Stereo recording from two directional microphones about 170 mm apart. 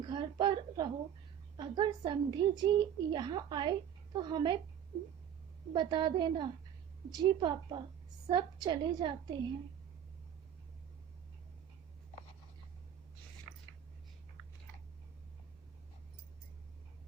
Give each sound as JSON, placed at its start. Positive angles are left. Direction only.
{"t": 0.0, "sound": "a sound", "side_deg": -25}
{"t": 1.5, "sound": "a woman's voice", "side_deg": -25}
{"t": 5.7, "sound": "a woman's voice", "side_deg": -25}